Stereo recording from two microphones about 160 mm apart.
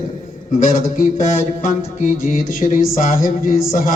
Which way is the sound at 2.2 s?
60° left (ahead or behind).